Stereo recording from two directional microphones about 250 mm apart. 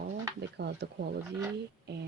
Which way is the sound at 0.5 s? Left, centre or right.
Right.